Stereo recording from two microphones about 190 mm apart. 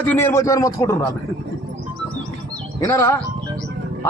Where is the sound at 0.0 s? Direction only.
10° left (ahead or behind).